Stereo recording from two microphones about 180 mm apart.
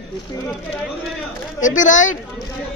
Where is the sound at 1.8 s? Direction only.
45° left (ahead or behind).